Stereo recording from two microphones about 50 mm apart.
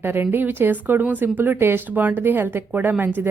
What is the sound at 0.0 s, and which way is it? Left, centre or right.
A woman's voice, right.